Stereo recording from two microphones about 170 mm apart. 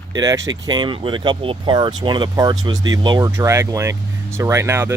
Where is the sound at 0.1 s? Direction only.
20° right (ahead or behind).